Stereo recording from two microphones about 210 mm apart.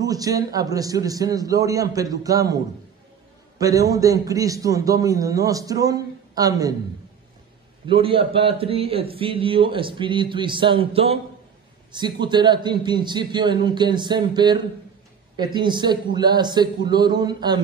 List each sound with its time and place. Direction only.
0.0 s a man's voice: 15° right (ahead or behind)
7.8 s a man's voice: 25° right (ahead or behind)